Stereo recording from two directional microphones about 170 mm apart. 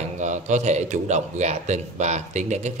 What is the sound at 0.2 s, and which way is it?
A man's voice, 45° right (ahead or behind).